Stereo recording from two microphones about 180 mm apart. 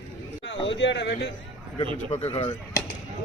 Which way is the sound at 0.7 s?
80° left.